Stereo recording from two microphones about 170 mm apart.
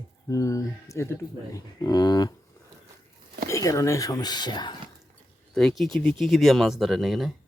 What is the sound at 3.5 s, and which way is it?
Speech, 20° left (ahead or behind).